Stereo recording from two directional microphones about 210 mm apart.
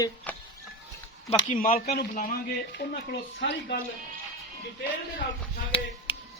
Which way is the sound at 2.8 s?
55° left (ahead or behind).